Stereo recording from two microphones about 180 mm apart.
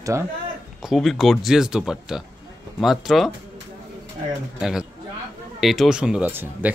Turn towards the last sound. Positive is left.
turn(degrees=-10)  # may be behind; listen again after turning